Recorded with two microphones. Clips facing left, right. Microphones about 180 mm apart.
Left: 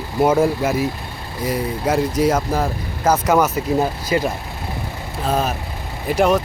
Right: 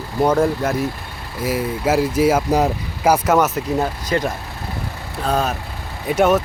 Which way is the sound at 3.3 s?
Centre (ahead or behind).